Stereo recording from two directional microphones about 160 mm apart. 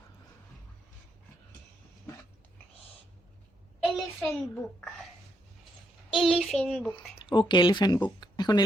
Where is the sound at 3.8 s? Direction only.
Centre (ahead or behind).